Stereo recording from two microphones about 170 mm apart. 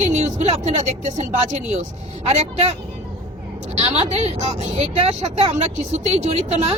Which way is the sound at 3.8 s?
35° right (ahead or behind).